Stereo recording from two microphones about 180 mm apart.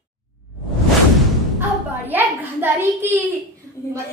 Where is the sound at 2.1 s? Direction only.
10° right (ahead or behind).